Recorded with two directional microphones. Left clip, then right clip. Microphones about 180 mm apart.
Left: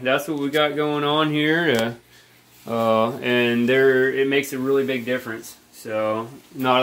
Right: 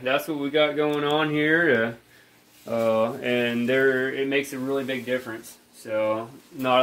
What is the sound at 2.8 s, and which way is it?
Mantra, 65° left (ahead or behind).